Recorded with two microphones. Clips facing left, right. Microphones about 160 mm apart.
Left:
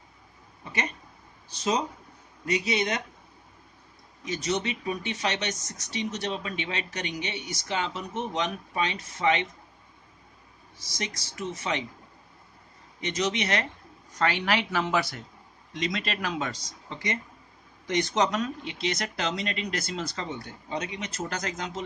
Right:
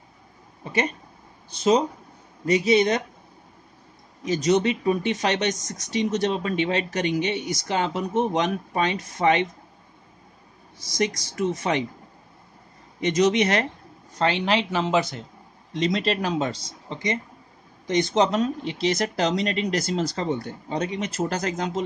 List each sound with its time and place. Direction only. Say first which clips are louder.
1.6 s speech: right 8 dB; 30° right (ahead or behind)
4.2 s speech: right 9 dB; 35° right (ahead or behind)
11.0 s speech: right 11 dB; 40° right (ahead or behind)
13.0 s speech: right 9 dB; 40° right (ahead or behind)
14.1 s speech: right 4 dB; 25° right (ahead or behind)
15.7 s speech: right 8 dB; 35° right (ahead or behind)